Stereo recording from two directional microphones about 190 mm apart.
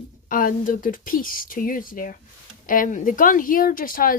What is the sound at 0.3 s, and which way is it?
Speech, 45° left (ahead or behind).